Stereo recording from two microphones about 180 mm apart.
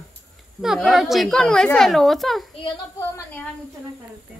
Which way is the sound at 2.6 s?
15° left (ahead or behind).